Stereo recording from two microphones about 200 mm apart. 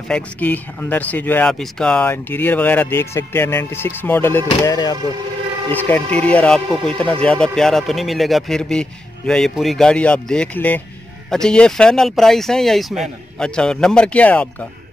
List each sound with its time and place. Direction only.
0.1 s speech: 10° left (ahead or behind)